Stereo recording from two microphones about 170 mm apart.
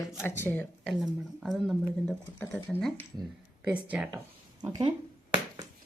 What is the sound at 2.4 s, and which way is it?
Speech, 10° left (ahead or behind).